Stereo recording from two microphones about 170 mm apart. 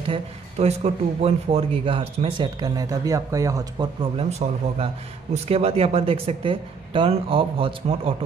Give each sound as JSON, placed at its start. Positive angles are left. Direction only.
{"t": 0.1, "sound": "speech", "side_deg": -40}